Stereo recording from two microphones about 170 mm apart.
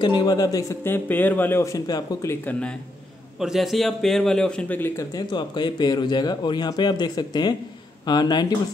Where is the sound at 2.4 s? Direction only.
5° left (ahead or behind).